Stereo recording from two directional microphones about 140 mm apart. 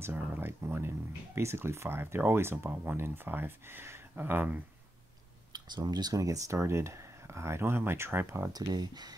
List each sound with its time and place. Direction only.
0.0 s speech: 15° right (ahead or behind)
5.5 s speech: 30° right (ahead or behind)